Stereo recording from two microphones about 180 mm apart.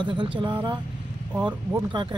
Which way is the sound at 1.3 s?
10° right (ahead or behind).